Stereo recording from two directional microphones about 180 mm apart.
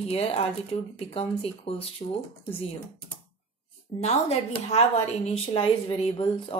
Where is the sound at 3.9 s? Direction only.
35° left (ahead or behind).